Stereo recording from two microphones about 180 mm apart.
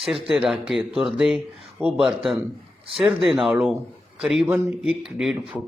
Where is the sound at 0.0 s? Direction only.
Centre (ahead or behind).